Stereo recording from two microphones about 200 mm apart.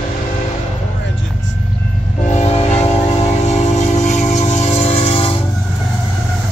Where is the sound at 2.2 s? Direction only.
35° left (ahead or behind).